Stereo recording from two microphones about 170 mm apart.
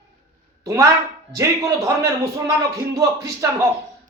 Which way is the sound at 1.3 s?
20° right (ahead or behind).